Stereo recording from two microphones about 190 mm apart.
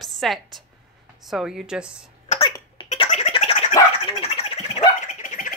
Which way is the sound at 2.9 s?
35° left (ahead or behind).